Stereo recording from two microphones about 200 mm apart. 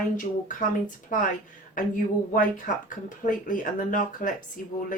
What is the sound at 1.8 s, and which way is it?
Speech, 40° left (ahead or behind).